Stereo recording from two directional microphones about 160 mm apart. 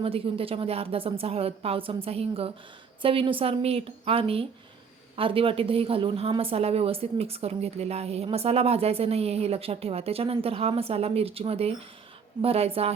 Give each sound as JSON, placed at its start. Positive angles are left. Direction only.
{"t": 0.0, "sound": "speech", "side_deg": -35}